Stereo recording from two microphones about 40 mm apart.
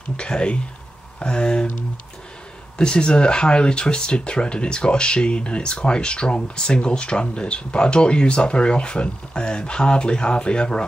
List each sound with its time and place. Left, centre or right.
0.2 s speech: left
2.8 s speech: left